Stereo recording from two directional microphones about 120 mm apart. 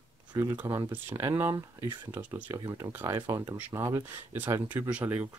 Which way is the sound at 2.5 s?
30° right (ahead or behind).